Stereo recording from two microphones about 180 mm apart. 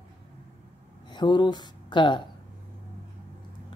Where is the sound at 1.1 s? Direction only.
25° left (ahead or behind).